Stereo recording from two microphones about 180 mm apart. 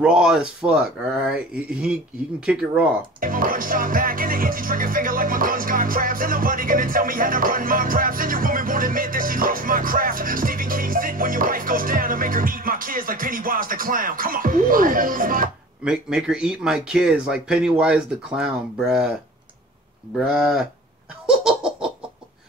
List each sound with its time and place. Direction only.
0.0 s speech: 5° right (ahead or behind)
3.2 s music: 50° right (ahead or behind)
15.8 s speech: 5° right (ahead or behind)
20.2 s speech: 5° right (ahead or behind)
21.3 s laughter: 5° right (ahead or behind)